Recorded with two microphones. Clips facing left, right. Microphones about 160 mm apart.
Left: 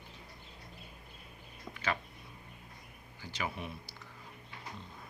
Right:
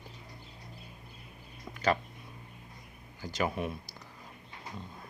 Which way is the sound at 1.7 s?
40° right (ahead or behind).